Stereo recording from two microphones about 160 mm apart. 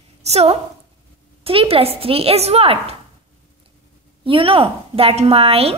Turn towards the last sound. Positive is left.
turn(degrees=-35)  # may be behind; listen again after turning